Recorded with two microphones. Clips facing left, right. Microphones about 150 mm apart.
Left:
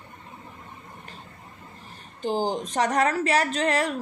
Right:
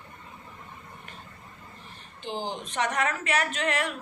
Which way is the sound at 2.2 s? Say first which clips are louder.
Left 8 dB; 40° left (ahead or behind).